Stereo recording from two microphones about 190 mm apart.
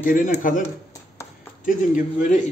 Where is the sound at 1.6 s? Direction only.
45° left (ahead or behind).